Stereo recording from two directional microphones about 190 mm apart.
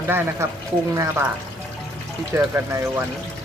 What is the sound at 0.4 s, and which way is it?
Speech, 15° right (ahead or behind).